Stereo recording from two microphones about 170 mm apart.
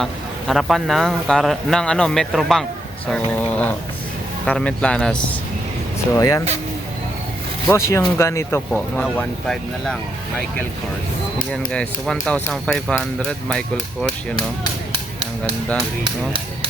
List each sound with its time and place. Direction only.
0.0 s a man's voice: centre (ahead or behind)
6.1 s speech: 20° left (ahead or behind)
7.7 s speech: 15° left (ahead or behind)
11.5 s a man's voice: 5° left (ahead or behind)